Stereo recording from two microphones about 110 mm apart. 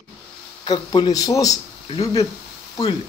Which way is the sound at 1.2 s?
30° left (ahead or behind).